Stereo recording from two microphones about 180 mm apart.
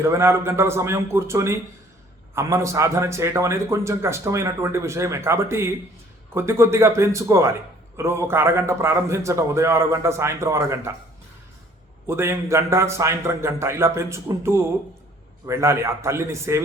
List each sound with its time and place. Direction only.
0.0 s a man's voice: 15° right (ahead or behind)
12.0 s a man's voice: 15° right (ahead or behind)